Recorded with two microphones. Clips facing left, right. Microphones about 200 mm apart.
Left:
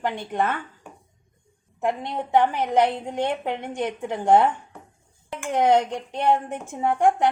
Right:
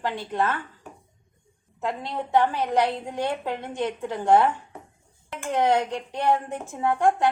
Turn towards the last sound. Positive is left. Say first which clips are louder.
# left 1 dB
turn(degrees=15)  # may be behind; listen again after turning